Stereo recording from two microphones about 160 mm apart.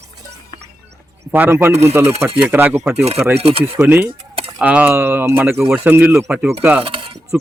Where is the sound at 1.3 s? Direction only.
10° right (ahead or behind).